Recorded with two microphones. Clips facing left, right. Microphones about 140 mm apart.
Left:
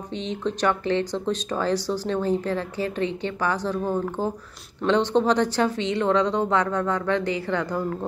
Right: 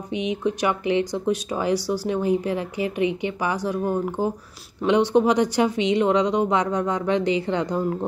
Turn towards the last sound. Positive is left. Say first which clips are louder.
# right 2 dB
turn(degrees=-20)  # may be behind; listen again after turning